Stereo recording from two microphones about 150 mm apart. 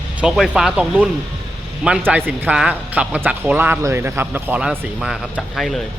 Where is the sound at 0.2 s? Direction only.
5° right (ahead or behind).